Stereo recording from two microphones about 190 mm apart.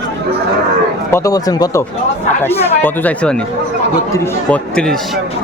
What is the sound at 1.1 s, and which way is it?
Speech, 20° left (ahead or behind).